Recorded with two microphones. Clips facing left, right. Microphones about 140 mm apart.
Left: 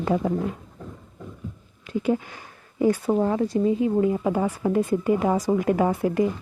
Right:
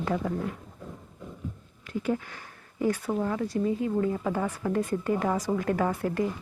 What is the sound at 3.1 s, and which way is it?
A woman's voice, 30° left (ahead or behind).